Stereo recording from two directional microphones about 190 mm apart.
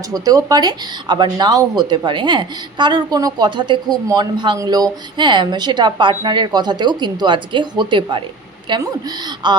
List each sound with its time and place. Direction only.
0.1 s speech: 20° right (ahead or behind)